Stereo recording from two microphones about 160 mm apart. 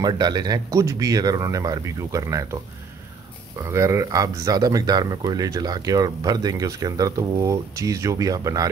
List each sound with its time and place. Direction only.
0.0 s speech: 25° right (ahead or behind)
3.6 s speech: 20° right (ahead or behind)